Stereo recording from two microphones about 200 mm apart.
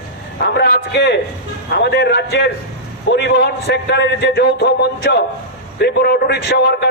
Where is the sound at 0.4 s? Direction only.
50° left (ahead or behind).